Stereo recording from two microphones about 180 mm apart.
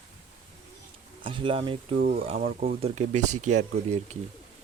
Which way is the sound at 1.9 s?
45° right (ahead or behind).